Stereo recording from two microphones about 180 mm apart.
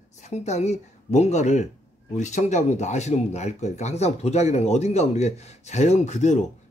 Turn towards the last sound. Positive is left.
turn(degrees=40)  # may be behind; listen again after turning